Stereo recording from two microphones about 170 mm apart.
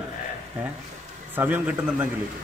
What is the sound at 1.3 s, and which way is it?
Speech, 10° right (ahead or behind).